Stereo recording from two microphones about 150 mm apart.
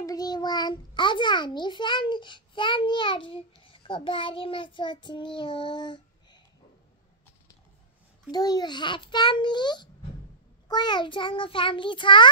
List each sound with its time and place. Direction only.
0.0 s a child's voice: 25° left (ahead or behind)
8.3 s a child's voice: 25° left (ahead or behind)